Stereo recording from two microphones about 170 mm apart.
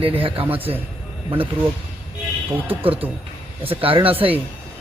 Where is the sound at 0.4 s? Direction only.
10° right (ahead or behind).